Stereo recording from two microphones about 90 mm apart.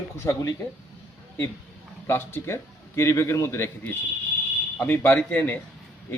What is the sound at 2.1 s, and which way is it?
A man's voice, 30° left (ahead or behind).